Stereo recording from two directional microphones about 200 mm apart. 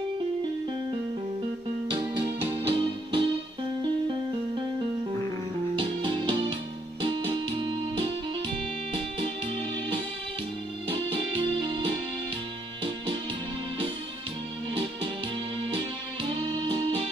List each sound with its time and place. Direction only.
1.9 s music: 25° right (ahead or behind)
5.8 s music: 25° right (ahead or behind)
10.9 s music: 25° right (ahead or behind)